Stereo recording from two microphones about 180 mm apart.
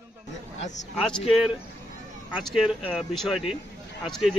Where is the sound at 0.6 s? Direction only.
40° left (ahead or behind).